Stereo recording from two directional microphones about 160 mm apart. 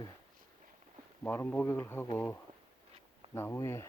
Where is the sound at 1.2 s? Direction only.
10° left (ahead or behind).